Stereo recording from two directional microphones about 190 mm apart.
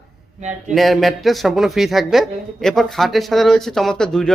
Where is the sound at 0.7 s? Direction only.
Centre (ahead or behind).